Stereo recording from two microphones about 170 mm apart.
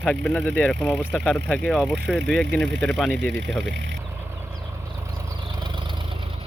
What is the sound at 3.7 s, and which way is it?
Speech, 90° right.